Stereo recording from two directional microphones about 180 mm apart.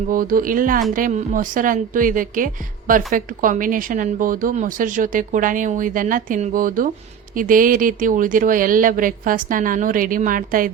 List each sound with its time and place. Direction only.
0.1 s a woman's voice: 50° right (ahead or behind)